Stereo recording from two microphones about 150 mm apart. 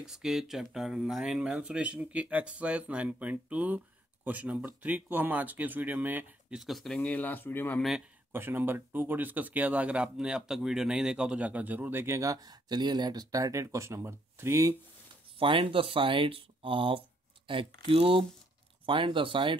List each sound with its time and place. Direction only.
0.0 s speech: 5° right (ahead or behind); by 7.8 s 15° left (ahead or behind)
8.3 s speech: 15° right (ahead or behind)
15.3 s speech: 35° right (ahead or behind)